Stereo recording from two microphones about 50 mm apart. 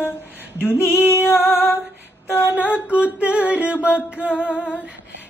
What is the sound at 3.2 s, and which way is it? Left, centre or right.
Female singing, right.